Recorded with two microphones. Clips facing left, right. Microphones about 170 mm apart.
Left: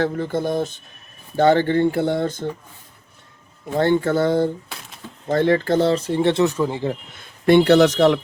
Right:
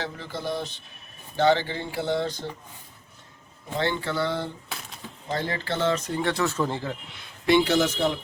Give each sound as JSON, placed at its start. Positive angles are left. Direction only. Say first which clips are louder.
{"t": 0.0, "sound": "speech", "louder": "left 11 dB", "side_deg": 55}
{"t": 3.8, "sound": "speech", "louder": "left 9 dB", "side_deg": 50}
{"t": 4.7, "sound": "a sound", "louder": "even", "side_deg": 0}
{"t": 5.3, "sound": "speech", "louder": "left 12 dB", "side_deg": 45}
{"t": 7.1, "sound": "speech", "louder": "left 6 dB", "side_deg": 50}